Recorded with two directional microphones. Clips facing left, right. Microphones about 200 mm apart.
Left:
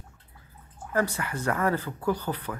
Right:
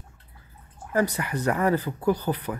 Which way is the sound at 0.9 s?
15° right (ahead or behind).